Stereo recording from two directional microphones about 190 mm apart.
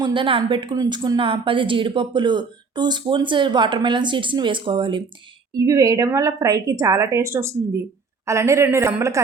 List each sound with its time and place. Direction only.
0.0 s a woman's voice: 25° right (ahead or behind)